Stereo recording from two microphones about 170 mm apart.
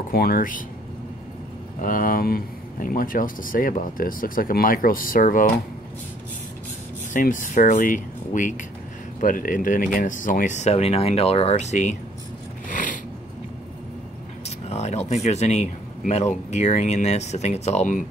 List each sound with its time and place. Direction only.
0.1 s speech: 60° left (ahead or behind)
1.8 s speech: 55° left (ahead or behind)
7.2 s speech: 50° left (ahead or behind)
12.6 s a sound: 50° left (ahead or behind)
14.7 s a sound: 40° left (ahead or behind)
15.2 s speech: 40° left (ahead or behind)